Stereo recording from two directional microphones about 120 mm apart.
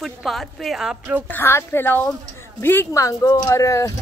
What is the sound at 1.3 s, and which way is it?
Speech, 20° left (ahead or behind).